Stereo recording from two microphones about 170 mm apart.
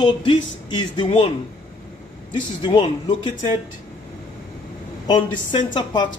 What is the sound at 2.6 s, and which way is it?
Speech, 25° left (ahead or behind).